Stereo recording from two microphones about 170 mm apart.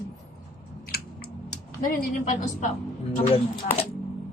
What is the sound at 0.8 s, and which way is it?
Chewing, 65° left (ahead or behind).